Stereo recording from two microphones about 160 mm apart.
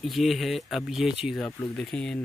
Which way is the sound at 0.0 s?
Centre (ahead or behind).